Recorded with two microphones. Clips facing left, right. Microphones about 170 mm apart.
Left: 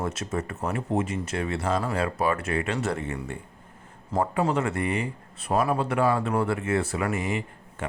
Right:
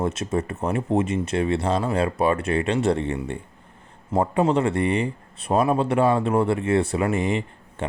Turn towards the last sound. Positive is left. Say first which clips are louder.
# right 4 dB
turn(degrees=-25)  # may be behind; listen again after turning